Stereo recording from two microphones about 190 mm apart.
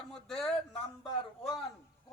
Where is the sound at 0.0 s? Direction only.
5° left (ahead or behind).